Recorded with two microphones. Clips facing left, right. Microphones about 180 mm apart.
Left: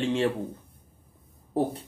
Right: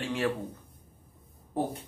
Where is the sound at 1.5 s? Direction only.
35° left (ahead or behind).